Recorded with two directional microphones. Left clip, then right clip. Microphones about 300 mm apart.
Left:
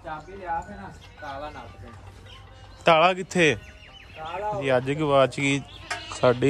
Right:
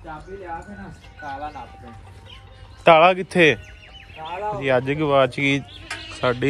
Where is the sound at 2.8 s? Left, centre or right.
Centre.